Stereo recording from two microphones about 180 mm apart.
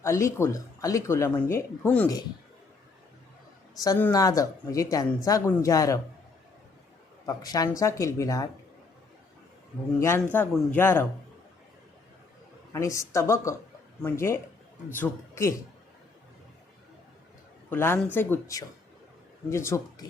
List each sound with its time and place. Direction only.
0.0 s speech: 15° left (ahead or behind)
3.8 s speech: 15° left (ahead or behind)
7.3 s speech: 20° left (ahead or behind)
10.3 s speech: 10° left (ahead or behind)
12.7 s speech: 15° left (ahead or behind)
17.7 s speech: 15° left (ahead or behind)